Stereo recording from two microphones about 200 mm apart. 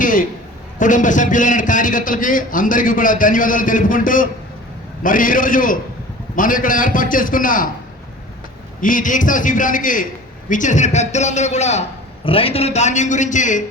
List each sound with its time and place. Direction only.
0.0 s a sound: 45° left (ahead or behind)
0.8 s a man's voice: 40° left (ahead or behind)
8.8 s a man's voice: 40° left (ahead or behind)